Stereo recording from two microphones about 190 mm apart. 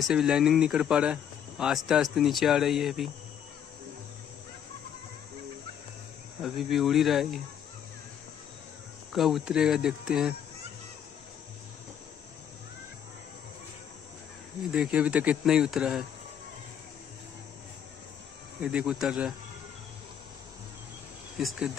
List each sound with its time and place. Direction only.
0.0 s speech: centre (ahead or behind)
6.4 s speech: centre (ahead or behind)
9.1 s speech: centre (ahead or behind)
14.7 s speech: 5° right (ahead or behind)
18.6 s speech: 5° right (ahead or behind)
21.4 s speech: centre (ahead or behind)